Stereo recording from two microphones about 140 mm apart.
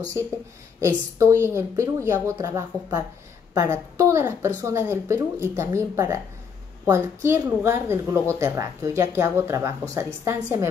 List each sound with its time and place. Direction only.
1.1 s a woman's voice: 20° right (ahead or behind)